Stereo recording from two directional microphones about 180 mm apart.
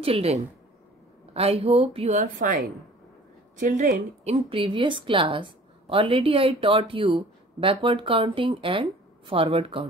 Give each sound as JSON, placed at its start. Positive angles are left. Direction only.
{"t": 0.0, "sound": "speech", "side_deg": -35}
{"t": 3.5, "sound": "a woman's voice", "side_deg": -45}
{"t": 4.2, "sound": "a woman's voice", "side_deg": -35}